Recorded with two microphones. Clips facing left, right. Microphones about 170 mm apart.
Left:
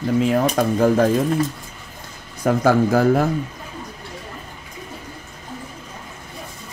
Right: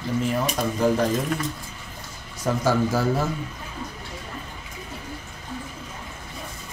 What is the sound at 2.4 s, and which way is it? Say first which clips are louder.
Speech: left 6 dB; 55° left (ahead or behind).